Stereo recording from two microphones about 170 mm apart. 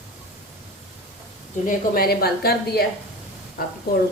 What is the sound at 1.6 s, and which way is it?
A woman's voice, 60° left (ahead or behind).